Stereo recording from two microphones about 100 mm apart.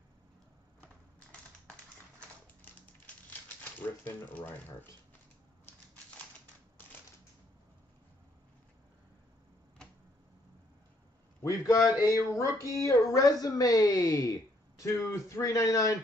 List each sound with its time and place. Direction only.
4.0 s speech: 20° left (ahead or behind)
11.4 s speech: 30° left (ahead or behind)